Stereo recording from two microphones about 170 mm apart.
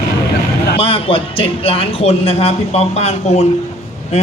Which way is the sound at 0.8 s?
35° left (ahead or behind).